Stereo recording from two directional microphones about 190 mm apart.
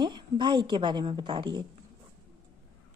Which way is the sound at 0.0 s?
25° right (ahead or behind).